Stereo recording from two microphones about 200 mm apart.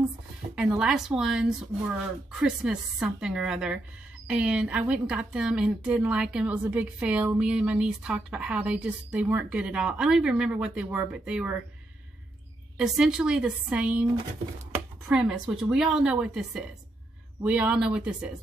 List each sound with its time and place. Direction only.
0.6 s a woman's voice: 5° right (ahead or behind)
12.7 s a woman's voice: 5° right (ahead or behind)
15.0 s a woman's voice: 5° right (ahead or behind)